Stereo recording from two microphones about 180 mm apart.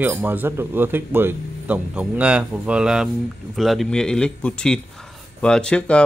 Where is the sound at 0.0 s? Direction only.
10° right (ahead or behind).